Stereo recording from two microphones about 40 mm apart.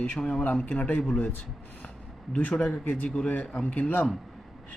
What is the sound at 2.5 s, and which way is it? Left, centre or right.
Speech, left.